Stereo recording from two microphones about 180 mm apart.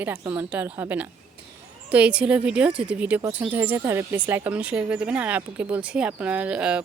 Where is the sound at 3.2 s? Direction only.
20° right (ahead or behind).